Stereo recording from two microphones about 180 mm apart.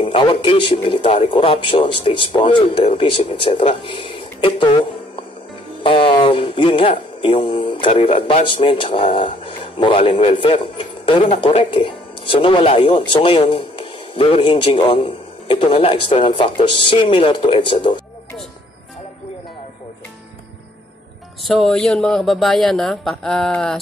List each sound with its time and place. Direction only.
0.0 s speech: 30° left (ahead or behind)
5.8 s speech: 30° left (ahead or behind)
21.5 s speech: centre (ahead or behind)